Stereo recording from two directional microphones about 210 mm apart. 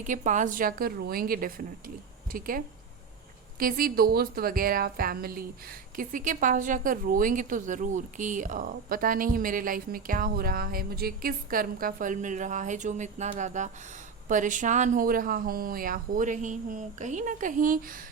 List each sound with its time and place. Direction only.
0.0 s a woman's voice: 35° right (ahead or behind)